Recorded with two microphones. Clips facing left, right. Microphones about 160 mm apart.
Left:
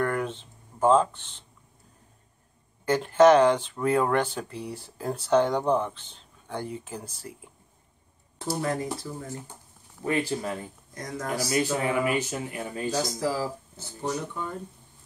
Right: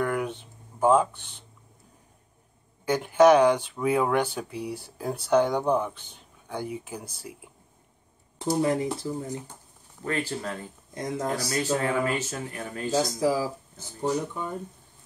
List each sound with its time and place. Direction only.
0.0 s a sound: 5° right (ahead or behind)
2.8 s speech: 5° right (ahead or behind)
8.4 s speech: 20° right (ahead or behind)
10.0 s speech: 15° left (ahead or behind)
11.0 s speech: 20° right (ahead or behind)
11.4 s speech: 15° left (ahead or behind)
13.2 s speech: 15° right (ahead or behind)